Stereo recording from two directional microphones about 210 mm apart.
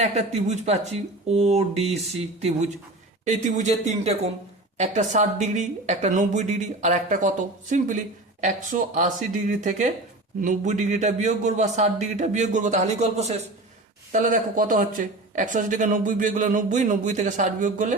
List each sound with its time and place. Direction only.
0.0 s a woman's voice: 35° right (ahead or behind)